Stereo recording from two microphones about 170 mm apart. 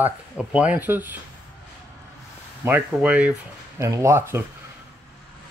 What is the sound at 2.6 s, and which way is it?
Speech, 10° right (ahead or behind).